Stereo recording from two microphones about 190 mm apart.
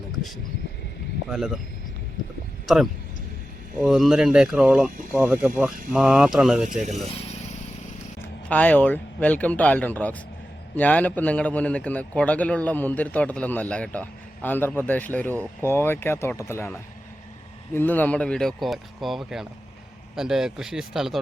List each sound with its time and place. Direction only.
1.3 s speech: centre (ahead or behind)
2.7 s speech: centre (ahead or behind)
6.7 s speech: 40° right (ahead or behind)
7.2 s vehicle: 35° left (ahead or behind)
8.4 s a man's voice: 10° left (ahead or behind)